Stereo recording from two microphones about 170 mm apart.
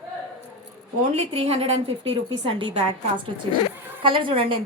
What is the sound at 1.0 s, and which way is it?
A woman's voice, 35° right (ahead or behind).